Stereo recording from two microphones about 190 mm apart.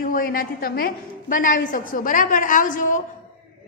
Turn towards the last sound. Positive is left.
turn(degrees=45)  # may be behind; listen again after turning